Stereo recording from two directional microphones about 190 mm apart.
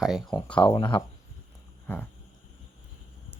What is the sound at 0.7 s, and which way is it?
Speech, 25° left (ahead or behind).